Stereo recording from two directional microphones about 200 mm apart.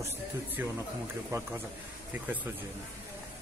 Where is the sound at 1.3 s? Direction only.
15° right (ahead or behind).